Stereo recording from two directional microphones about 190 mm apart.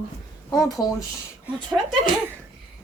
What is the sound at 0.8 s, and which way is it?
Speech, 20° left (ahead or behind).